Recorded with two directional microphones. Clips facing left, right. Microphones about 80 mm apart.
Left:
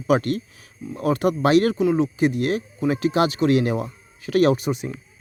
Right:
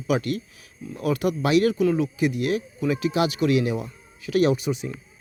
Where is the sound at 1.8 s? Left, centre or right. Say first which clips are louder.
Left 2 dB; left.